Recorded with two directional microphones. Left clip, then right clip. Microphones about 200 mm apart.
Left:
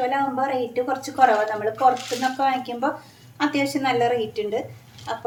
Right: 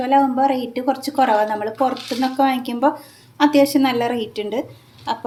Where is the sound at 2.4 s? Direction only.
45° right (ahead or behind).